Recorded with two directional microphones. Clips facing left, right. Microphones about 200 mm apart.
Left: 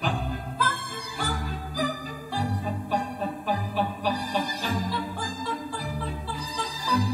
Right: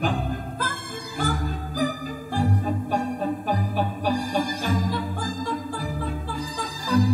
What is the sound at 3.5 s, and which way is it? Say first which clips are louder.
Music: right 2 dB; 45° right (ahead or behind).